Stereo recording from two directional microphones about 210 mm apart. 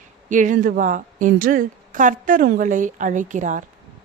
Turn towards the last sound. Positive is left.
turn(degrees=-35)  # may be behind; listen again after turning